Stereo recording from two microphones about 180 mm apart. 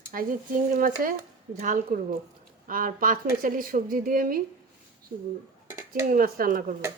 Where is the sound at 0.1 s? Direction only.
50° right (ahead or behind).